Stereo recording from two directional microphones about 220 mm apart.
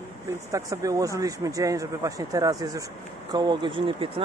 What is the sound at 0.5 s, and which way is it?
Speech, 15° right (ahead or behind).